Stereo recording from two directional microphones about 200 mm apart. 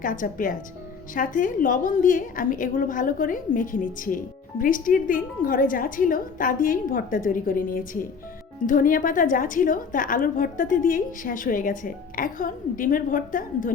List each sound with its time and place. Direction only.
0.0 s a woman's voice: 40° left (ahead or behind)